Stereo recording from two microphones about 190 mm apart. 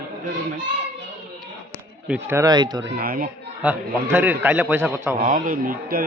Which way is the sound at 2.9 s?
50° right (ahead or behind).